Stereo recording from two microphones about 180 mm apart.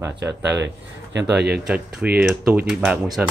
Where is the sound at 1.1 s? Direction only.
65° right (ahead or behind).